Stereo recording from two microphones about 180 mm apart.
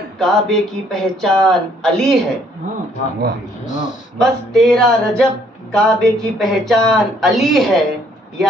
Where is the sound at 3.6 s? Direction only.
45° left (ahead or behind).